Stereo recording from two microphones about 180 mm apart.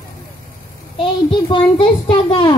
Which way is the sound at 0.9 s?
30° left (ahead or behind).